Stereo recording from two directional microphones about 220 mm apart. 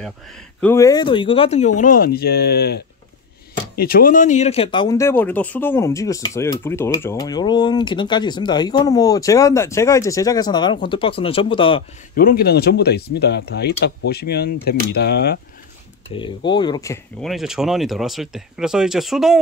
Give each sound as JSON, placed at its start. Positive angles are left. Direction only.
{"t": 0.6, "sound": "speech", "side_deg": 10}
{"t": 12.2, "sound": "speech", "side_deg": 40}
{"t": 16.1, "sound": "speech", "side_deg": 20}
{"t": 17.2, "sound": "speech", "side_deg": 0}